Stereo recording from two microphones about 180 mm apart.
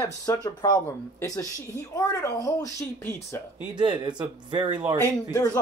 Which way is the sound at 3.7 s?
25° right (ahead or behind).